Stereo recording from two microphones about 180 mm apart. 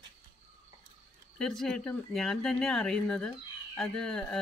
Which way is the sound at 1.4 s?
Centre (ahead or behind).